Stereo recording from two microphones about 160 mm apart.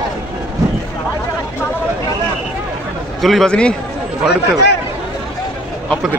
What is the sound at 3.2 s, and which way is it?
Speech, centre (ahead or behind).